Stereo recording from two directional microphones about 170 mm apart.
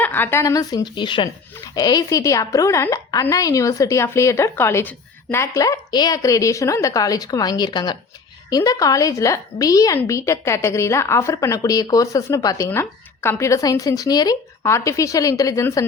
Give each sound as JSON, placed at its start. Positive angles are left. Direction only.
{"t": 0.0, "sound": "a woman's voice", "side_deg": 10}